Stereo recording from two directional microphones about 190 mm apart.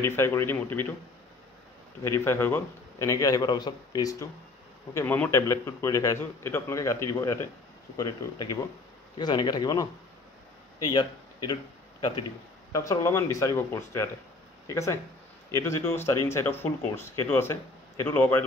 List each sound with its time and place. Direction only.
0.0 s speech: 15° left (ahead or behind)
2.0 s speech: 15° left (ahead or behind)
9.2 s speech: 25° left (ahead or behind)
12.7 s speech: 15° left (ahead or behind)